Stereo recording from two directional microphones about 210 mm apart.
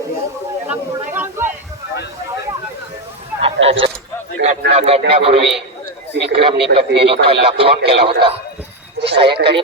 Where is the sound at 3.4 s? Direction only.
25° right (ahead or behind).